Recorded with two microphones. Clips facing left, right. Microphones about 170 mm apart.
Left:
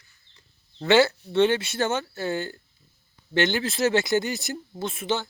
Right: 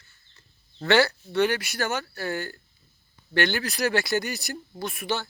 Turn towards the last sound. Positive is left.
turn(degrees=20)  # may be behind; listen again after turning